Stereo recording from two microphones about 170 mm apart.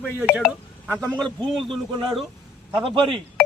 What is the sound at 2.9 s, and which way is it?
Speech, 30° right (ahead or behind).